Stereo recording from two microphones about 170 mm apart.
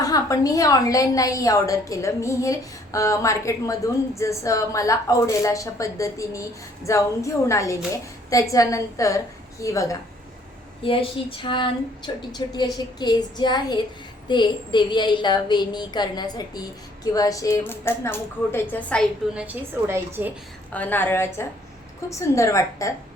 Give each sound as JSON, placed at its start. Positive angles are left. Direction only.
{"t": 0.0, "sound": "a woman's voice", "side_deg": 20}
{"t": 10.8, "sound": "a woman's voice", "side_deg": 30}
{"t": 19.3, "sound": "a woman's voice", "side_deg": -5}
{"t": 20.7, "sound": "a woman's voice", "side_deg": 10}